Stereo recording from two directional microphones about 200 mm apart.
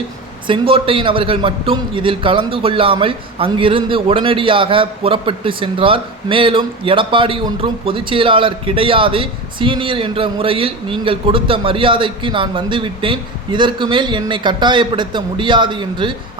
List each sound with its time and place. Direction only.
0.4 s a man's voice: 25° right (ahead or behind)